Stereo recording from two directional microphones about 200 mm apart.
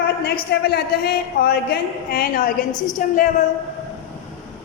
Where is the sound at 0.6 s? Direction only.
55° left (ahead or behind).